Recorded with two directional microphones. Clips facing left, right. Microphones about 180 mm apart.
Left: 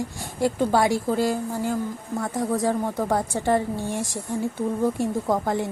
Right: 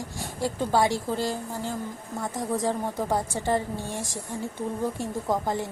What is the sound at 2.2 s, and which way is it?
Speech, 15° right (ahead or behind).